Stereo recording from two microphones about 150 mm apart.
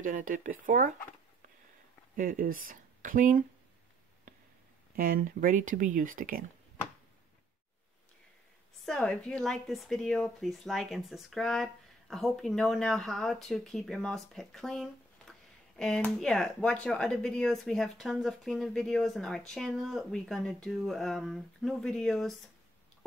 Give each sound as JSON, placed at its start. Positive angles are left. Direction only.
{"t": 0.0, "sound": "speech", "side_deg": -65}
{"t": 2.1, "sound": "speech", "side_deg": -65}
{"t": 4.9, "sound": "speech", "side_deg": -70}
{"t": 8.8, "sound": "speech", "side_deg": 5}